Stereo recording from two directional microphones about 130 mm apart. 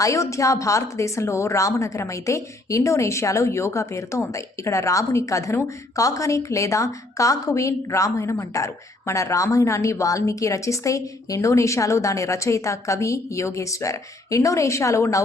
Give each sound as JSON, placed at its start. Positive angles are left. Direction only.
{"t": 0.0, "sound": "a woman's voice", "side_deg": 25}